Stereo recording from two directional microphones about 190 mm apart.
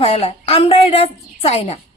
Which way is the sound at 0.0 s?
30° left (ahead or behind).